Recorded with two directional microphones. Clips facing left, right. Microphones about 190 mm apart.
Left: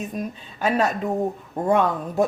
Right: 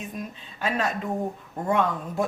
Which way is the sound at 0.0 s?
40° left (ahead or behind).